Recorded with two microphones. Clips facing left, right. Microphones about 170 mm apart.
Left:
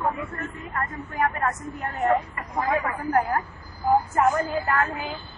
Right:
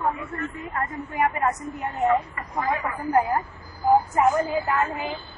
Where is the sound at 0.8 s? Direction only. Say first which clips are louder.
Right 2 dB; 20° right (ahead or behind).